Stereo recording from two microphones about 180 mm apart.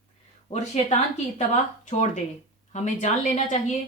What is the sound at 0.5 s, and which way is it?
A woman's voice, 40° left (ahead or behind).